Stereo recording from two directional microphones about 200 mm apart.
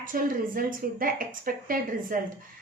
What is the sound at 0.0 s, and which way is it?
Speech, 45° right (ahead or behind).